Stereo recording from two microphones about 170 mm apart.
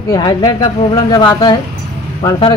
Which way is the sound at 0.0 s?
20° left (ahead or behind).